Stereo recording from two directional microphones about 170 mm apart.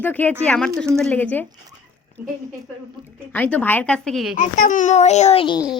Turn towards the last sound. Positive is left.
turn(degrees=30)  # may be behind; listen again after turning